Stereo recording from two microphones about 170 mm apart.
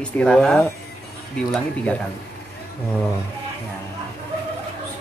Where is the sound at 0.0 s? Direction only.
5° left (ahead or behind).